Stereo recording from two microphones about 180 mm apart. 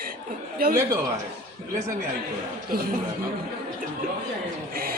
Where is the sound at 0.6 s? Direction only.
60° right (ahead or behind).